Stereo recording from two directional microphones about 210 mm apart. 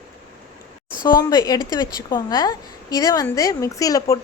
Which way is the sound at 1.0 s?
20° left (ahead or behind).